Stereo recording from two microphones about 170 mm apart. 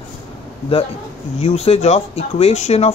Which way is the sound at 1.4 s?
40° left (ahead or behind).